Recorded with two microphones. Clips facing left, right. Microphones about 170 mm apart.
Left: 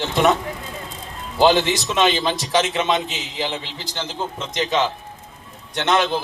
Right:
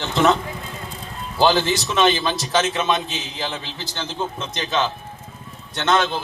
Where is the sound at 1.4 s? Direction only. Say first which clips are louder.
Left 2 dB; 20° left (ahead or behind).